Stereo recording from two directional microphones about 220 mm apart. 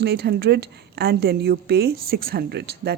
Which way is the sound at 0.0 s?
50° right (ahead or behind).